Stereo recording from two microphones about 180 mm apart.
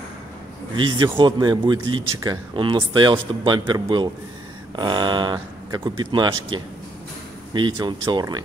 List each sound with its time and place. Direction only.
0.7 s a man's voice: 25° right (ahead or behind)